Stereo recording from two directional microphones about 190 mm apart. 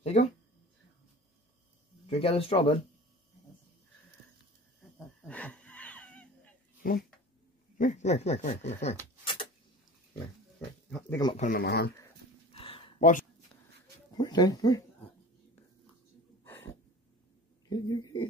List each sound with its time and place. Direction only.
0.0 s speech: 35° left (ahead or behind)
2.0 s speech: 30° left (ahead or behind)
5.3 s wheeze: 5° left (ahead or behind)
6.8 s speech: 50° left (ahead or behind)
9.2 s a sound: 25° left (ahead or behind)
11.1 s speech: 20° left (ahead or behind)
11.3 s speech: 45° left (ahead or behind)
12.5 s a sound: 30° left (ahead or behind)
14.1 s speech: 20° left (ahead or behind)
17.6 s speech: 20° left (ahead or behind)